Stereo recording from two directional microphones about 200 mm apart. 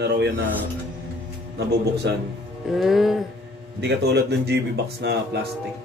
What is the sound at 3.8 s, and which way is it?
Speech, 55° right (ahead or behind).